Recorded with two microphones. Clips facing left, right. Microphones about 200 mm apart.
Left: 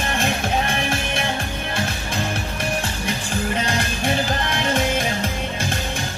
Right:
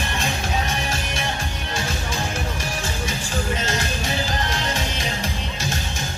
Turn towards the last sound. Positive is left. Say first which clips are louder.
# left 6 dB
turn(degrees=55)  # may be behind; listen again after turning